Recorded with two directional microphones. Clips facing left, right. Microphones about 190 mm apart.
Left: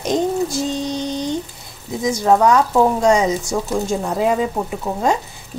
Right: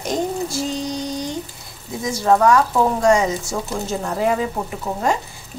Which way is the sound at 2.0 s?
20° left (ahead or behind).